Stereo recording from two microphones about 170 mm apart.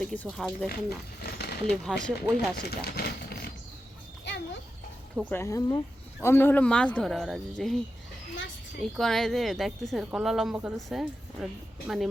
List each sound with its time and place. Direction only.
0.0 s speech: 5° left (ahead or behind)
0.7 s speech: 65° left (ahead or behind)
1.7 s speech: 5° left (ahead or behind)
2.6 s speech: 65° left (ahead or behind)
4.3 s a sound: 90° left
5.3 s speech: 15° left (ahead or behind)
9.0 s speech: centre (ahead or behind)